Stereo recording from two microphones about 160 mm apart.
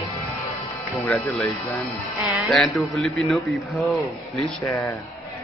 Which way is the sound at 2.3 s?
Centre (ahead or behind).